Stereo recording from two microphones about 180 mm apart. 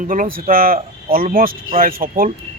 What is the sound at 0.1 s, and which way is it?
A man's voice, 50° right (ahead or behind).